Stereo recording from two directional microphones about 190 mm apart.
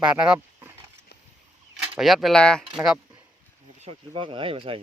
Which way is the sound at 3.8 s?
30° right (ahead or behind).